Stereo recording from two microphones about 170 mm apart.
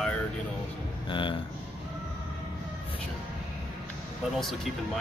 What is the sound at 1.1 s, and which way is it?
Speech, 30° left (ahead or behind).